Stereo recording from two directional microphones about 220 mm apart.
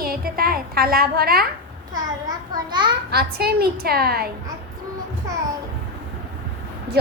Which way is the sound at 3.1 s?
45° right (ahead or behind).